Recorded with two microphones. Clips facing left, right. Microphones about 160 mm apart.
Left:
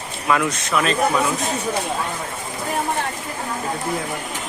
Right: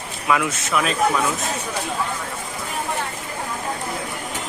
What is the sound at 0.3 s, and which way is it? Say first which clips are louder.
Speech: left 1 dB; centre (ahead or behind).